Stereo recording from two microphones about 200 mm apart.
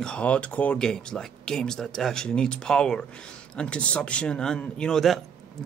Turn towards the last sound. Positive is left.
turn(degrees=0)  # may be behind; listen again after turning